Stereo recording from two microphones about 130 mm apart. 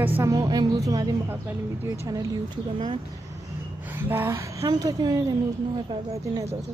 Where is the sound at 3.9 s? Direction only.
15° right (ahead or behind).